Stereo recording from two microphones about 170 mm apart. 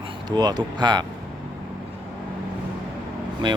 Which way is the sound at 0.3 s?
25° right (ahead or behind).